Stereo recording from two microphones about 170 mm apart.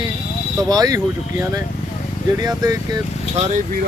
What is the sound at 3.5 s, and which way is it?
Speech, 55° right (ahead or behind).